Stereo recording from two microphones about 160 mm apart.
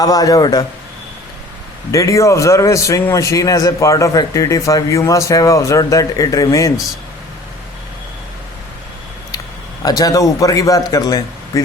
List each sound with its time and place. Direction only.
0.0 s a man's voice: 25° left (ahead or behind)
1.9 s a man's voice: 20° left (ahead or behind)
9.8 s a man's voice: 20° left (ahead or behind)